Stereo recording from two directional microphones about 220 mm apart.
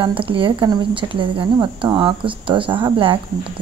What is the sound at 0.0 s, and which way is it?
Speech, 25° right (ahead or behind).